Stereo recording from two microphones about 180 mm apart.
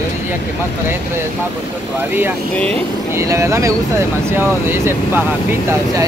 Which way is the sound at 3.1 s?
15° right (ahead or behind).